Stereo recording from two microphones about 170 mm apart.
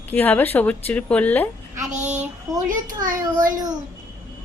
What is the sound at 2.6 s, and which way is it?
Speech, 50° right (ahead or behind).